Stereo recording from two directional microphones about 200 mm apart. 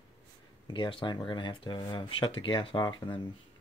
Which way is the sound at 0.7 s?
25° left (ahead or behind).